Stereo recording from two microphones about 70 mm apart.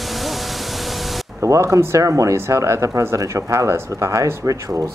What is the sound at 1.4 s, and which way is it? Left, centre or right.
Speech, right.